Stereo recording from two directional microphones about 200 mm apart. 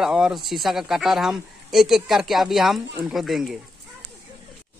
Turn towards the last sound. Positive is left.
turn(degrees=0)  # may be behind; listen again after turning